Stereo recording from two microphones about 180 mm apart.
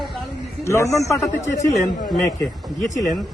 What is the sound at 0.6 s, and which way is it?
Speech, 15° left (ahead or behind).